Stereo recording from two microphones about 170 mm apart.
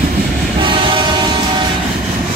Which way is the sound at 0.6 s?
30° right (ahead or behind).